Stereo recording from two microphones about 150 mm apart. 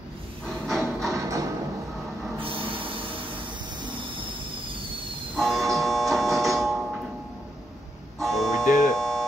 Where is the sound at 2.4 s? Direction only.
35° right (ahead or behind).